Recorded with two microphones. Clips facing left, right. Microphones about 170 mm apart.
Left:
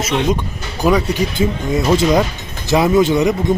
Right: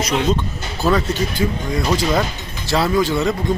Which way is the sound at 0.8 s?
15° left (ahead or behind).